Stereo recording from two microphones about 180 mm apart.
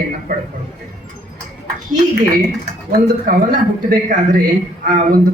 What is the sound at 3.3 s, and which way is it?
Speech, 50° right (ahead or behind).